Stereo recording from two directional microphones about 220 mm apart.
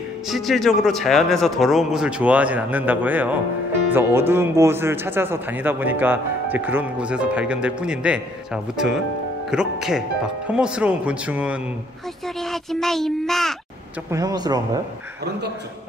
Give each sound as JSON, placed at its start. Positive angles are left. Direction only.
{"t": 0.3, "sound": "speech", "side_deg": 0}
{"t": 14.1, "sound": "speech", "side_deg": -15}